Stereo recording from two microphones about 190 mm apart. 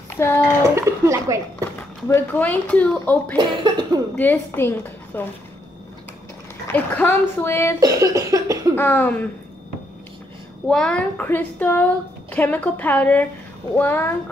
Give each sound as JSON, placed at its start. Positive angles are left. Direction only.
{"t": 0.2, "sound": "a woman's voice", "side_deg": 15}
{"t": 0.7, "sound": "speech", "side_deg": -15}
{"t": 1.8, "sound": "a woman's voice", "side_deg": 10}
{"t": 3.3, "sound": "cough", "side_deg": -25}
{"t": 4.2, "sound": "a woman's voice", "side_deg": 10}
{"t": 6.7, "sound": "a woman's voice", "side_deg": 10}
{"t": 7.8, "sound": "cough", "side_deg": -15}
{"t": 8.7, "sound": "a woman's voice", "side_deg": 10}
{"t": 10.7, "sound": "a woman's voice", "side_deg": 5}